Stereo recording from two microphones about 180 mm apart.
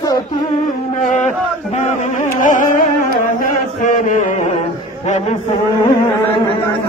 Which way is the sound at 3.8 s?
45° left (ahead or behind).